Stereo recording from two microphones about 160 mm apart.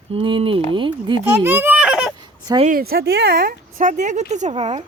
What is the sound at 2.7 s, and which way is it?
A woman's voice, 70° right (ahead or behind).